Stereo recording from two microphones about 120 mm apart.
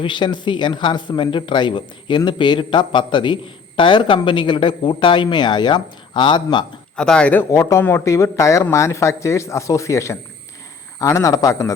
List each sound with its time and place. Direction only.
0.0 s speech: 40° left (ahead or behind)
6.9 s speech: 5° left (ahead or behind)
7.5 s a man's voice: 25° left (ahead or behind)